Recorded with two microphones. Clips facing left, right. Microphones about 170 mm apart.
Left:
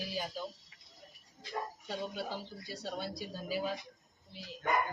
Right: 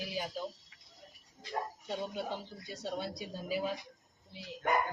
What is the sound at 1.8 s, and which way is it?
A woman's voice, 25° right (ahead or behind).